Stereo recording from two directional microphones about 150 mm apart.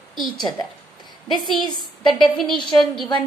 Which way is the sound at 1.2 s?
Centre (ahead or behind).